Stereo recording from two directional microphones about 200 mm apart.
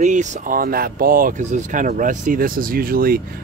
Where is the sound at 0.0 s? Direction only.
35° right (ahead or behind).